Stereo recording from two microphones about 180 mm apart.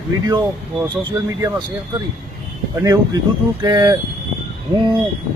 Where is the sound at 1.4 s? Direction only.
20° right (ahead or behind).